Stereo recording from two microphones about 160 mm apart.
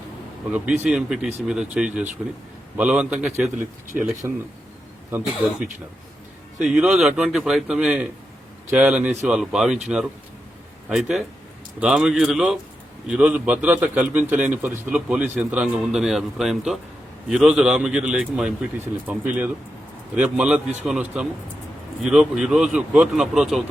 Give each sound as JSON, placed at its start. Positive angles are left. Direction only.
{"t": 0.5, "sound": "a man's voice", "side_deg": -10}
{"t": 5.1, "sound": "a man's voice", "side_deg": -5}